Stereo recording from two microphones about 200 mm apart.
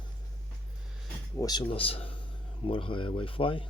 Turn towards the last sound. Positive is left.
turn(degrees=25)  # may be behind; listen again after turning